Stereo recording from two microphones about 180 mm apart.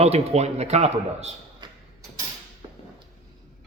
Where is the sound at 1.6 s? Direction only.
15° right (ahead or behind).